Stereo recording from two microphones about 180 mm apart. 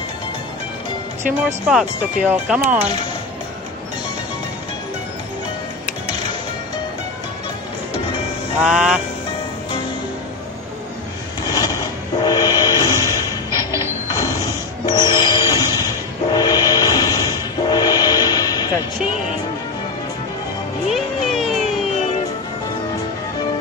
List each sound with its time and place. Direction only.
1.4 s speech: 5° right (ahead or behind)
8.6 s speech: 5° right (ahead or behind)
11.4 s train: 20° left (ahead or behind)
14.0 s mechanisms: 20° left (ahead or behind)
14.9 s music: 20° left (ahead or behind)
20.9 s music: centre (ahead or behind)